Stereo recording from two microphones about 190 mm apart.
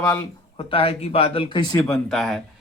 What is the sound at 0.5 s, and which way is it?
Speech, 30° left (ahead or behind).